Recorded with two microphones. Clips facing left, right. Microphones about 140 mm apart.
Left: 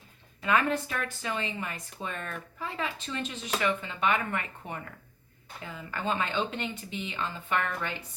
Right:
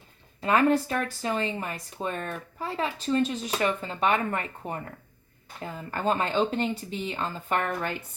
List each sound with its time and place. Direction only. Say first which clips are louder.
0.4 s speech: right 5 dB; 35° right (ahead or behind)